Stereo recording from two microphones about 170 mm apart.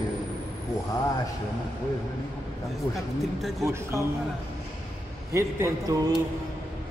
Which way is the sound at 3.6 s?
20° right (ahead or behind).